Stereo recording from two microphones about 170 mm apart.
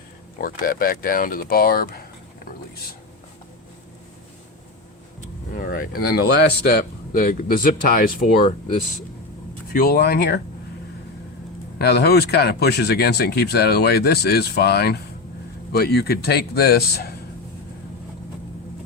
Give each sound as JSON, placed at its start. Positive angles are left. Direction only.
{"t": 0.4, "sound": "speech", "side_deg": 55}
{"t": 5.5, "sound": "speech", "side_deg": 55}
{"t": 9.7, "sound": "speech", "side_deg": 65}
{"t": 11.8, "sound": "speech", "side_deg": 70}